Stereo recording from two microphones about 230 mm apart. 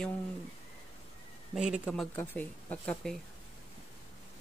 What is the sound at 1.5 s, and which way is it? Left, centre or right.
Speech, centre.